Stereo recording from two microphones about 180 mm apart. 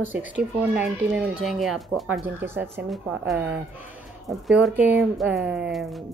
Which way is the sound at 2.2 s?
10° right (ahead or behind).